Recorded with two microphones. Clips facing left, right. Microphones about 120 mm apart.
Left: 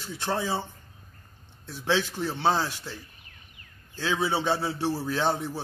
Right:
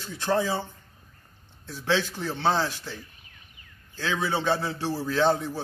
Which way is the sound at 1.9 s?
15° left (ahead or behind).